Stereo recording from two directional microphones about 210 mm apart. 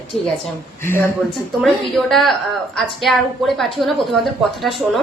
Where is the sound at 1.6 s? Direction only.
Centre (ahead or behind).